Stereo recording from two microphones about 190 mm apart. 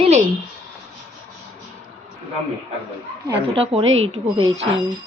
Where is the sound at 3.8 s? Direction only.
90° right.